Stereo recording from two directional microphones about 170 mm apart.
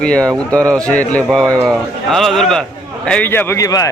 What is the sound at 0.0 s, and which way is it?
A man's voice, 5° left (ahead or behind).